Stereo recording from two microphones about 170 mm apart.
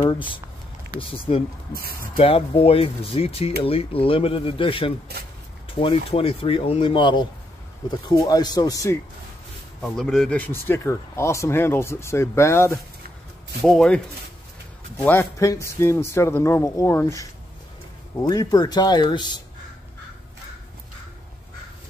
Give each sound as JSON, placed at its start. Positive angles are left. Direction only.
{"t": 0.0, "sound": "speech", "side_deg": 30}
{"t": 1.7, "sound": "speech", "side_deg": -60}
{"t": 2.1, "sound": "speech", "side_deg": 35}
{"t": 9.8, "sound": "speech", "side_deg": 5}
{"t": 13.7, "sound": "speech", "side_deg": 5}
{"t": 15.0, "sound": "speech", "side_deg": 15}